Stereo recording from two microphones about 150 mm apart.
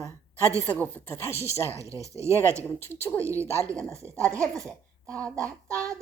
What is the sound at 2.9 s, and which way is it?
Speech, 15° left (ahead or behind).